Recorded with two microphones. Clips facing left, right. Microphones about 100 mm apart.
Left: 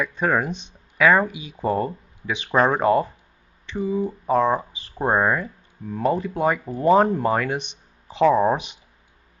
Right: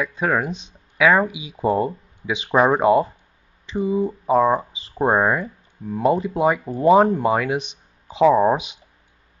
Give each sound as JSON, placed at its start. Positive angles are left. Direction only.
{"t": 0.0, "sound": "speech", "side_deg": 0}
{"t": 6.0, "sound": "speech", "side_deg": -15}
{"t": 6.7, "sound": "speech", "side_deg": -20}
{"t": 7.1, "sound": "speech", "side_deg": -5}